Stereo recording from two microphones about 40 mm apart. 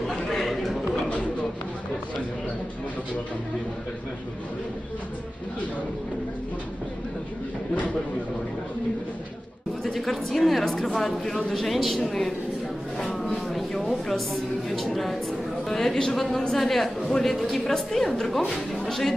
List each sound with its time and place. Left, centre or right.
0.9 s a sound: left
9.8 s speech: centre
13.5 s speech: centre
14.9 s a woman's voice: centre